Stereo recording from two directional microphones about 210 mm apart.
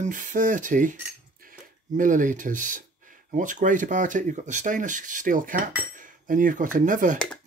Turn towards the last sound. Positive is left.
turn(degrees=-40)  # may be behind; listen again after turning